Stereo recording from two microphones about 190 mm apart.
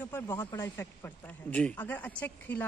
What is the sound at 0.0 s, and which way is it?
Speech, 10° left (ahead or behind).